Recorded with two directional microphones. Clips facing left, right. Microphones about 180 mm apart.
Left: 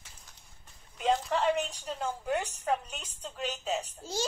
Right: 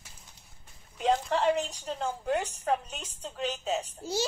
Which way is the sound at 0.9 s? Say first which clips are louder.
Right 2 dB; centre (ahead or behind).